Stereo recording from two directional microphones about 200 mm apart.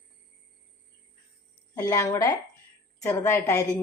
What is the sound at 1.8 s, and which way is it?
A woman's voice, 15° left (ahead or behind).